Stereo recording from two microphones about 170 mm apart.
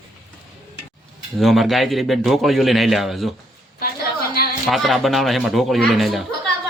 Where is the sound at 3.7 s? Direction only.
65° left (ahead or behind).